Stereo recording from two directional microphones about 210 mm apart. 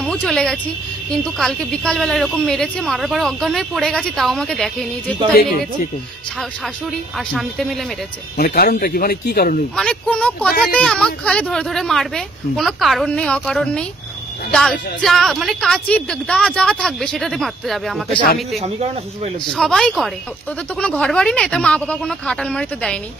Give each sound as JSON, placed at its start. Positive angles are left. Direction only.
{"t": 0.0, "sound": "a woman's voice", "side_deg": 5}
{"t": 7.2, "sound": "a woman's voice", "side_deg": 0}
{"t": 8.4, "sound": "speech", "side_deg": 45}
{"t": 9.8, "sound": "a woman's voice", "side_deg": 5}
{"t": 18.6, "sound": "speech", "side_deg": -30}
{"t": 19.5, "sound": "a woman's voice", "side_deg": 0}